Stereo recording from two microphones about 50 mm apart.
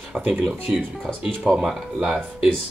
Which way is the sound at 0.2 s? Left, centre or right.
Right.